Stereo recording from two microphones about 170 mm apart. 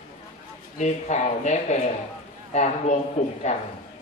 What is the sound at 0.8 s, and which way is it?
A man's voice, 45° left (ahead or behind).